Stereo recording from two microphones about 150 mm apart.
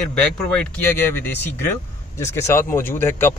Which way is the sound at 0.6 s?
15° left (ahead or behind).